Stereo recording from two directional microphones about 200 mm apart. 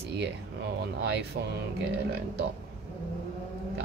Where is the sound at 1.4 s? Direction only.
50° right (ahead or behind).